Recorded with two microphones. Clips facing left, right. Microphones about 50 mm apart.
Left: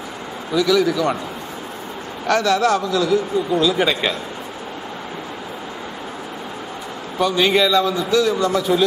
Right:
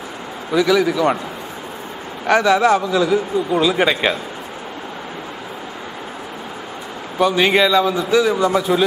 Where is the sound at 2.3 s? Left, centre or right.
Centre.